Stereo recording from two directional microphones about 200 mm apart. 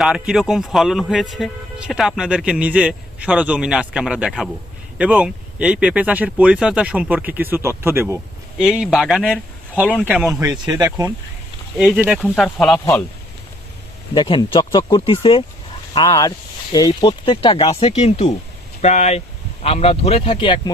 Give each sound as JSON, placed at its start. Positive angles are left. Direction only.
{"t": 0.0, "sound": "a man's voice", "side_deg": -5}
{"t": 11.8, "sound": "a man's voice", "side_deg": -5}
{"t": 14.1, "sound": "speech", "side_deg": 25}